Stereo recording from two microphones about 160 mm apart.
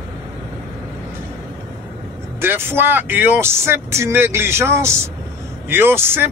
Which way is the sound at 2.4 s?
15° right (ahead or behind).